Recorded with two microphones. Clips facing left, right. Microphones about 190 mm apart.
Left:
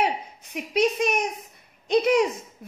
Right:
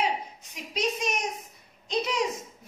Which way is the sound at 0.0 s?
60° left (ahead or behind).